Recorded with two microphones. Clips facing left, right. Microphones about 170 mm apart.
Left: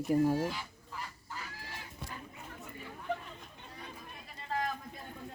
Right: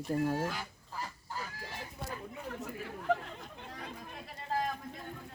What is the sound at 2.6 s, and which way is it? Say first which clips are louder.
Chatter: right 5 dB; 80° right.